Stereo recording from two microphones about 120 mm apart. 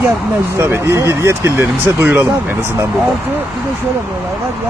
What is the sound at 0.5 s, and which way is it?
Speech, 20° right (ahead or behind).